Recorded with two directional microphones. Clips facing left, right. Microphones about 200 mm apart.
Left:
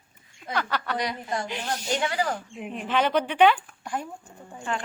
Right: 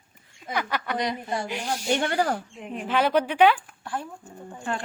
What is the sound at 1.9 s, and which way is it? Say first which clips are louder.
Speech: right 3 dB; 55° right (ahead or behind).